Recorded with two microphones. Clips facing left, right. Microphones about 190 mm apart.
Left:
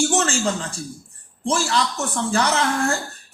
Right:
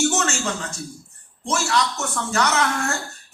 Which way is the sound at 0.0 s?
30° left (ahead or behind).